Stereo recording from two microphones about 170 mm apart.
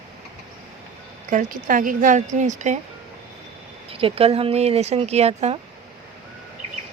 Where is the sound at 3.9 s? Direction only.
35° right (ahead or behind).